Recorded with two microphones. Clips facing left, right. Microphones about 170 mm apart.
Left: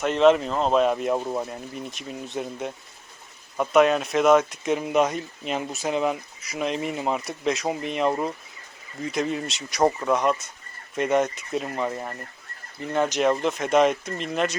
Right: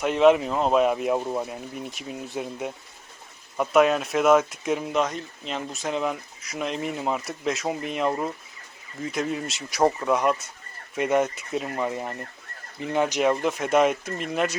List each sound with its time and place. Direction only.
0.0 s speech: 10° right (ahead or behind)